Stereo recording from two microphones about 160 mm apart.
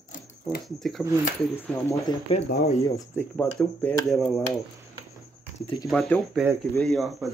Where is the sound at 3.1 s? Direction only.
10° left (ahead or behind).